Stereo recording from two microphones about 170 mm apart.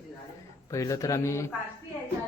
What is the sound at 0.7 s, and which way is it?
Speech, 20° left (ahead or behind).